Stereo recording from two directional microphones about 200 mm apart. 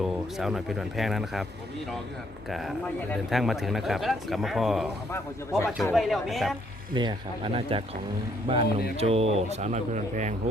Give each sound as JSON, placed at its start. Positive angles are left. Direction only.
{"t": 0.3, "sound": "a man's voice", "side_deg": 0}
{"t": 2.5, "sound": "a man's voice", "side_deg": 0}
{"t": 5.1, "sound": "a man's voice", "side_deg": 15}
{"t": 5.6, "sound": "a man's voice", "side_deg": 0}
{"t": 6.9, "sound": "speech", "side_deg": -25}